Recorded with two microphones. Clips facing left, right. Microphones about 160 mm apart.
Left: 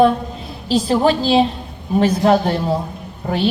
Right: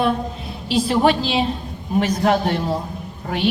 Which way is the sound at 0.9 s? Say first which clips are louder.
Left 3 dB; 35° left (ahead or behind).